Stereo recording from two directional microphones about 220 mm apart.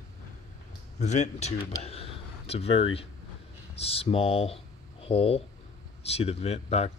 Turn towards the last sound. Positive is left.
turn(degrees=30)  # may be behind; listen again after turning